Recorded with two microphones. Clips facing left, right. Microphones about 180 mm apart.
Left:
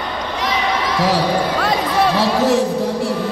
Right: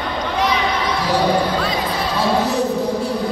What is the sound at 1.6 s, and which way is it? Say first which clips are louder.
Music: left 5 dB; 80° left.